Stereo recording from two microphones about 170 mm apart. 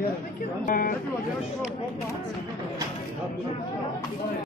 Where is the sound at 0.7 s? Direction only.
55° left (ahead or behind).